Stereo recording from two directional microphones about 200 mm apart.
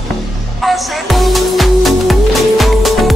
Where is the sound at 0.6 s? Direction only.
Centre (ahead or behind).